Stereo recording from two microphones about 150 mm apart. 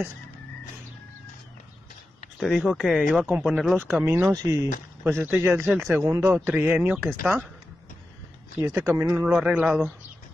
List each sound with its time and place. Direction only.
2.4 s speech: centre (ahead or behind)
3.7 s speech: 15° right (ahead or behind)
8.7 s speech: 15° right (ahead or behind)